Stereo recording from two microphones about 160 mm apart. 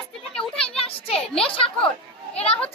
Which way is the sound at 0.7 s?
35° left (ahead or behind).